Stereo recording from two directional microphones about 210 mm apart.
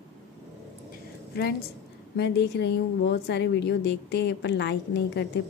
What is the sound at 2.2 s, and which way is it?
A woman's voice, 55° left (ahead or behind).